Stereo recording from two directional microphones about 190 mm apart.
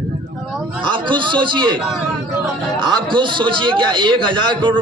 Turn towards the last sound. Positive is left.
turn(degrees=-25)  # may be behind; listen again after turning